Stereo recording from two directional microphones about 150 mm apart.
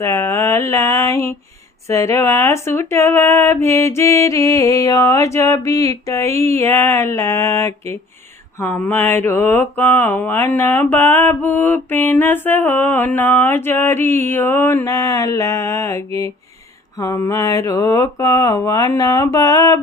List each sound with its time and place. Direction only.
0.0 s a sound: 20° left (ahead or behind)
1.9 s speech: 20° left (ahead or behind)
8.6 s mantra: 10° left (ahead or behind)
17.0 s speech: 20° left (ahead or behind)